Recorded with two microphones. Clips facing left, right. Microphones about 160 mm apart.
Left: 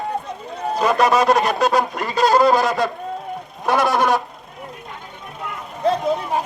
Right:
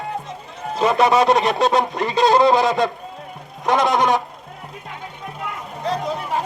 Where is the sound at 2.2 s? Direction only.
20° right (ahead or behind).